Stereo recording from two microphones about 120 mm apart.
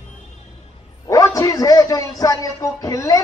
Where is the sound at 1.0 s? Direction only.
25° left (ahead or behind).